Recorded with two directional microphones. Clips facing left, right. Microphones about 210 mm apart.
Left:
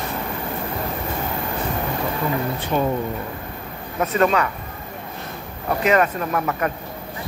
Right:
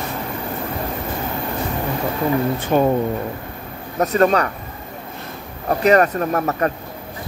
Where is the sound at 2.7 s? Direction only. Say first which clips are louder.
Right 5 dB; 50° right (ahead or behind).